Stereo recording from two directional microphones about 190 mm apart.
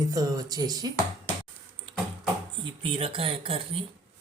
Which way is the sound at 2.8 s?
30° right (ahead or behind).